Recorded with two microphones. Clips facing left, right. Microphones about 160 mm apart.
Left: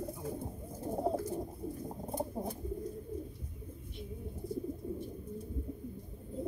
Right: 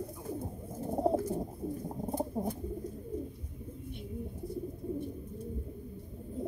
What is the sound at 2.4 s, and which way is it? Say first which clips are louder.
Bird: right 4 dB; 10° right (ahead or behind).